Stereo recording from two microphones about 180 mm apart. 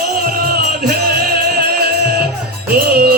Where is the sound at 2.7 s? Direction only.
60° right (ahead or behind).